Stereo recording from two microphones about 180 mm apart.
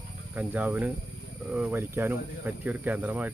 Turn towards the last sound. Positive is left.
turn(degrees=-10)  # may be behind; listen again after turning